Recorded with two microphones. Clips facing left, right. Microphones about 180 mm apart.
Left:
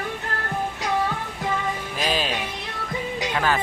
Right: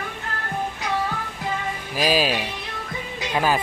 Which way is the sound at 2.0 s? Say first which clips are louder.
Right 6 dB; 10° right (ahead or behind).